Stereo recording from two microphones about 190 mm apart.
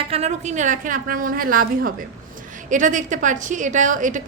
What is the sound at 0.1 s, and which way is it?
A woman's voice, 35° right (ahead or behind).